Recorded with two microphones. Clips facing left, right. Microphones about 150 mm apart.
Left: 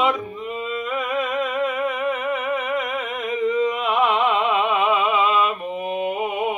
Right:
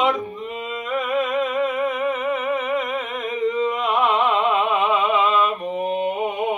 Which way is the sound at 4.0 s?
Centre (ahead or behind).